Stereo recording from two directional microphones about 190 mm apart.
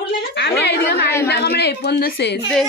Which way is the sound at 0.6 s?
60° left (ahead or behind).